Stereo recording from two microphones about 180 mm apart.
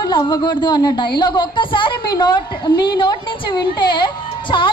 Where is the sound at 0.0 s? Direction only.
25° left (ahead or behind).